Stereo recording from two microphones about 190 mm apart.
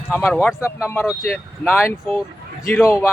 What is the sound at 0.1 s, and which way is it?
Speech, 10° left (ahead or behind).